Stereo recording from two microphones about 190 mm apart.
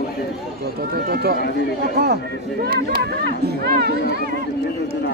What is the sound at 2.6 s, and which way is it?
Speech, 60° right (ahead or behind).